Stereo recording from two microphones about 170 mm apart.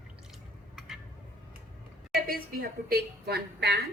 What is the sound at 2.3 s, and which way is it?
A woman's voice, 60° right (ahead or behind).